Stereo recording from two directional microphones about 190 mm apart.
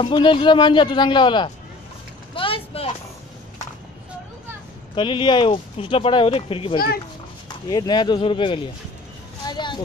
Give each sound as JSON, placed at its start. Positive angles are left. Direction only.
{"t": 0.0, "sound": "speech", "side_deg": 25}
{"t": 2.3, "sound": "vehicle", "side_deg": 30}
{"t": 4.9, "sound": "speech", "side_deg": 25}
{"t": 9.5, "sound": "vehicle", "side_deg": 25}